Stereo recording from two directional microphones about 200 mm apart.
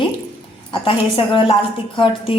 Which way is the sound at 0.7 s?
25° left (ahead or behind).